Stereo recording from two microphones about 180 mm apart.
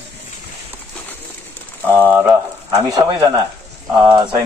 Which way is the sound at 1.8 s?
10° right (ahead or behind).